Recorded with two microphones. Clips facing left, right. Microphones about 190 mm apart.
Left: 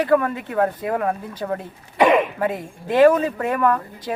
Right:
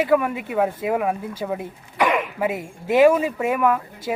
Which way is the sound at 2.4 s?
10° right (ahead or behind).